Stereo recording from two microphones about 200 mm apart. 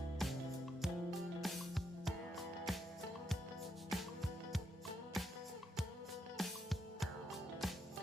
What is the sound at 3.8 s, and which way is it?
Music, centre (ahead or behind).